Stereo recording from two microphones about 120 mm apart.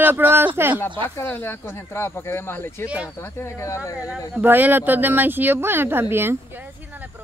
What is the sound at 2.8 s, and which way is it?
Speech, 10° right (ahead or behind).